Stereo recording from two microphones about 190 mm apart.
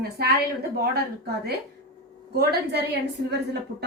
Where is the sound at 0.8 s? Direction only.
55° right (ahead or behind).